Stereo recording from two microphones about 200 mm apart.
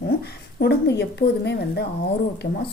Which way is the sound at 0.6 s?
55° left (ahead or behind).